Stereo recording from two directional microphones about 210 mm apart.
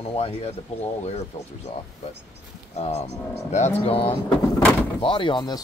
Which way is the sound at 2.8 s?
30° left (ahead or behind).